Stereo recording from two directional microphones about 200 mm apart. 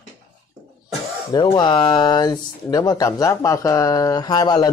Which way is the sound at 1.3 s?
25° left (ahead or behind).